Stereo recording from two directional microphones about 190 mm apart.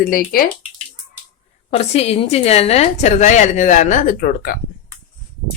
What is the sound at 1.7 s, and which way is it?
A woman's voice, 35° left (ahead or behind).